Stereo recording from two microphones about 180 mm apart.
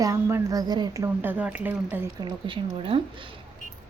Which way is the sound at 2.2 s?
25° right (ahead or behind).